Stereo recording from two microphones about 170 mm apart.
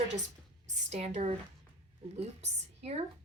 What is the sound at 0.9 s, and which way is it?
Speech, 40° right (ahead or behind).